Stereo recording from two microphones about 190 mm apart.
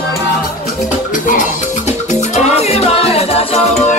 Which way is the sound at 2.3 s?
35° left (ahead or behind).